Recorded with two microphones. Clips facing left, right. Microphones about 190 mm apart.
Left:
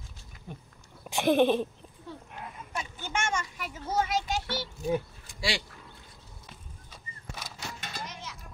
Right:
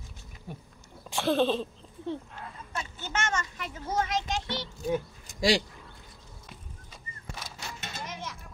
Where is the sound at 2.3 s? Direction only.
15° left (ahead or behind).